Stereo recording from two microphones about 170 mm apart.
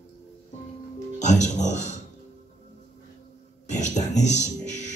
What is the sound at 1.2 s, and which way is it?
Speech, 45° left (ahead or behind).